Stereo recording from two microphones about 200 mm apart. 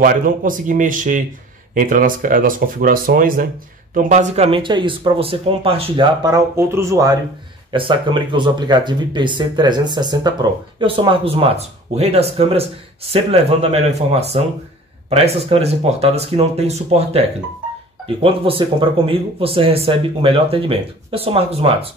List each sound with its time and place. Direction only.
0.0 s speech: 45° right (ahead or behind)